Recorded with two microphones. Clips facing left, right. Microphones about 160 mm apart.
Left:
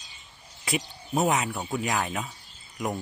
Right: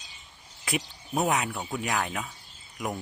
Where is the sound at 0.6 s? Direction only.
Centre (ahead or behind).